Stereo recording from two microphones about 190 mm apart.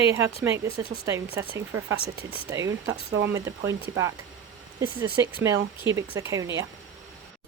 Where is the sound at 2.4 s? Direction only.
15° right (ahead or behind).